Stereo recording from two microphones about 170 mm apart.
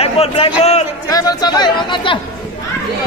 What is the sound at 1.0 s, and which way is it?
A man's voice, 20° left (ahead or behind).